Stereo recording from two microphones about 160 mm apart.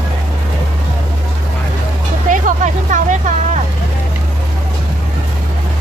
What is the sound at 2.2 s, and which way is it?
Music, 55° right (ahead or behind).